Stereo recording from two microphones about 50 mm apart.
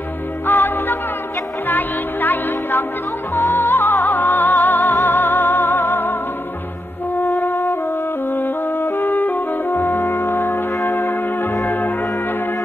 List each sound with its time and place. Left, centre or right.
0.5 s music: left
7.2 s music: left
8.3 s brass instrument: left
11.6 s music: left